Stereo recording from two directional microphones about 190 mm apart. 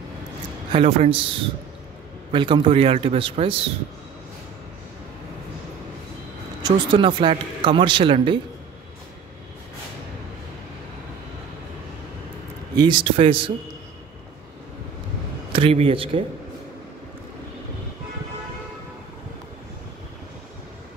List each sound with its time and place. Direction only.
0.7 s speech: 30° right (ahead or behind)
6.6 s speech: 25° right (ahead or behind)
12.7 s speech: 25° right (ahead or behind)
15.5 s speech: 30° right (ahead or behind)